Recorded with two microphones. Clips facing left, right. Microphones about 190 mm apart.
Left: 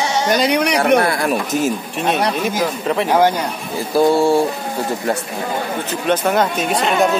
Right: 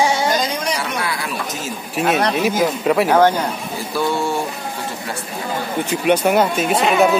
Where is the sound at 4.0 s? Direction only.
40° left (ahead or behind).